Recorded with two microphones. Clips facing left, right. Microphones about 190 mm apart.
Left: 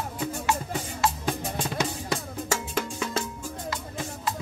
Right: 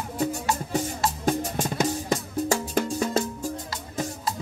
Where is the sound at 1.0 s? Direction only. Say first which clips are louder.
Left 1 dB; 45° right (ahead or behind).